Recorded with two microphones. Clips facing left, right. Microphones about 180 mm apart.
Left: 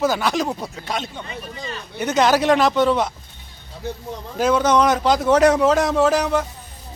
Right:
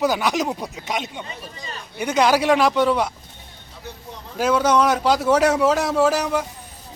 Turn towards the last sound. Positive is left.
turn(degrees=-5)  # may be behind; listen again after turning